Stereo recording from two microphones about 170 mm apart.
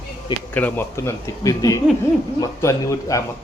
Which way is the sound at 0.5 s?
10° left (ahead or behind).